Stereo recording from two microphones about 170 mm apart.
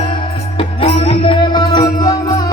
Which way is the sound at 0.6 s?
30° left (ahead or behind).